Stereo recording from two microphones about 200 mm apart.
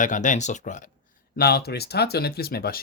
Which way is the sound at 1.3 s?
50° left (ahead or behind).